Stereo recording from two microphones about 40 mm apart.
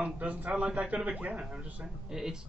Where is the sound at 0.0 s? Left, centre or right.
Right.